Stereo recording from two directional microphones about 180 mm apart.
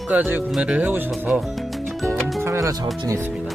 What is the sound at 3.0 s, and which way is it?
Speech, 15° right (ahead or behind).